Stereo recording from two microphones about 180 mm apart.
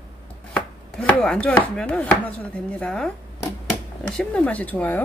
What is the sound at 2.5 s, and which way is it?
Speech, 5° left (ahead or behind).